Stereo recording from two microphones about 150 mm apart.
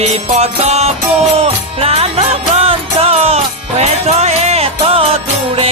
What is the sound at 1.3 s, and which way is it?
Music, 40° right (ahead or behind).